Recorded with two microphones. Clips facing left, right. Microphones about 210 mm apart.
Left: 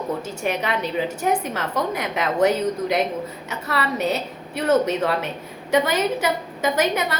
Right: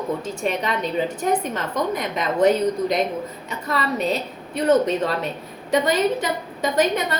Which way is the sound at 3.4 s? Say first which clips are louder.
Right 1 dB; 75° left (ahead or behind).